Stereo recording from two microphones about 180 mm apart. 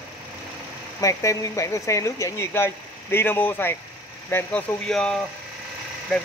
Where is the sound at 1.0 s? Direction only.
15° left (ahead or behind).